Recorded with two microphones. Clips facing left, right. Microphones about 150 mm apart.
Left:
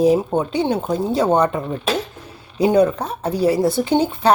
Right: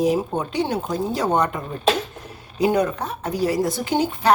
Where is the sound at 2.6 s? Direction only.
30° left (ahead or behind).